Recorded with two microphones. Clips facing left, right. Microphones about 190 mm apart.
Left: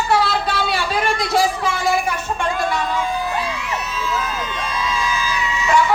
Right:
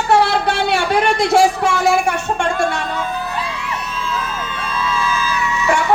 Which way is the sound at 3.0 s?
10° left (ahead or behind).